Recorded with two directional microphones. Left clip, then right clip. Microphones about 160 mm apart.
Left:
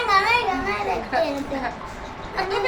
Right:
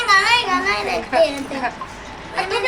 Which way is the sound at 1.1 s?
30° right (ahead or behind).